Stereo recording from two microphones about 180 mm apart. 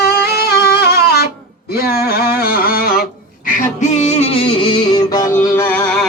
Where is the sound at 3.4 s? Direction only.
40° left (ahead or behind).